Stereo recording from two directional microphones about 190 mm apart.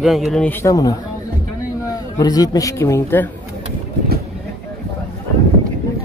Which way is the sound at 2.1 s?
20° left (ahead or behind).